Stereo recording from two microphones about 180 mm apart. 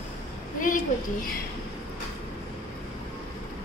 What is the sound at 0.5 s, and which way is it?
Speech, 50° left (ahead or behind).